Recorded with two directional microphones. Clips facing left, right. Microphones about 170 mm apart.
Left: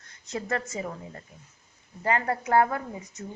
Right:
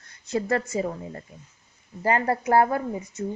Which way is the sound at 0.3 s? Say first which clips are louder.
Right 6 dB; 35° right (ahead or behind).